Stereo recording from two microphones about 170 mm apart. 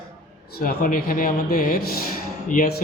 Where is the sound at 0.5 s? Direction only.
60° left (ahead or behind).